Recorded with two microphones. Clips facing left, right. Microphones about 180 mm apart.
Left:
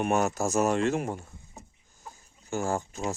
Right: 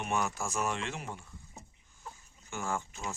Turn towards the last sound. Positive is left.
turn(degrees=40)  # may be behind; listen again after turning